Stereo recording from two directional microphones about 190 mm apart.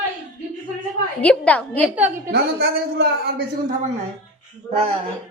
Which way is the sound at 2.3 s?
60° right (ahead or behind).